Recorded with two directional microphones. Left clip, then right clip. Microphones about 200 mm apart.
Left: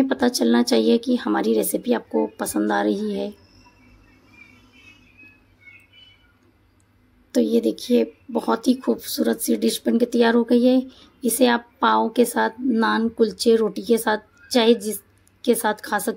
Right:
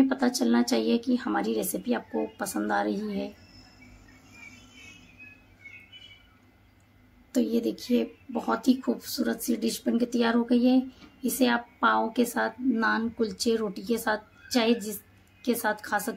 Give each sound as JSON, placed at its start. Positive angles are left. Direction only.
{"t": 0.0, "sound": "speech", "side_deg": 35}
{"t": 7.3, "sound": "speech", "side_deg": 35}